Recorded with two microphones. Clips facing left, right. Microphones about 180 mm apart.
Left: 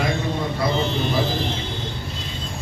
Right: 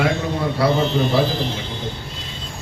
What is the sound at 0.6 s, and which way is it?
Speech, 75° right (ahead or behind).